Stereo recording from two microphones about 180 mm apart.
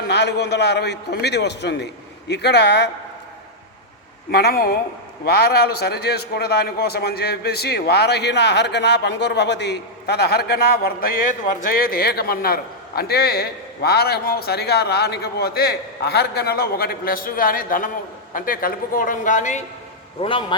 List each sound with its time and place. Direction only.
0.1 s a man's voice: 70° left (ahead or behind)
4.3 s a man's voice: 60° left (ahead or behind); by 19.6 s 45° left (ahead or behind)
20.2 s a man's voice: 30° left (ahead or behind)